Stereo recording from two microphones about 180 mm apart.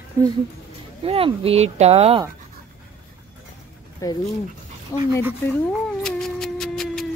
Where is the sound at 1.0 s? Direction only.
30° right (ahead or behind).